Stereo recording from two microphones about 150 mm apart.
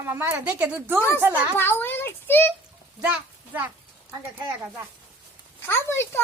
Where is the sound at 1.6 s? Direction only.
15° left (ahead or behind).